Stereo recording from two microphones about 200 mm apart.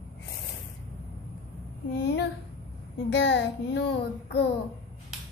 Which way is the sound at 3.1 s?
60° left (ahead or behind).